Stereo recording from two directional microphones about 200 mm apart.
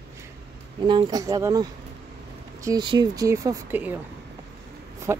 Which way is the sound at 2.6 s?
20° right (ahead or behind).